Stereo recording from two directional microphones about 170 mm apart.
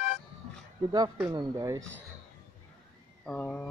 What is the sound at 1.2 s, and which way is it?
Speech, 20° right (ahead or behind).